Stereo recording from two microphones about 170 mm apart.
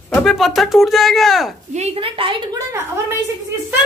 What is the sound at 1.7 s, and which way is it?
Speech, 35° right (ahead or behind).